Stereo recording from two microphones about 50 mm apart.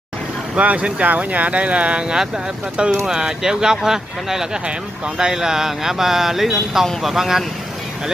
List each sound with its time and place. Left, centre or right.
0.6 s speech: right; by 7.4 s centre